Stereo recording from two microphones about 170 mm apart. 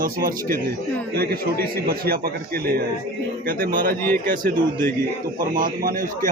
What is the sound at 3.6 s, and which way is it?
Speech, 55° right (ahead or behind).